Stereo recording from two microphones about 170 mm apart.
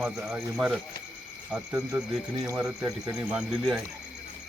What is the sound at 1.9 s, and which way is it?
Speech, 10° right (ahead or behind).